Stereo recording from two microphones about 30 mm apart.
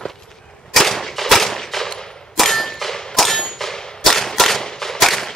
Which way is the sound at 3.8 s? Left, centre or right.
Centre.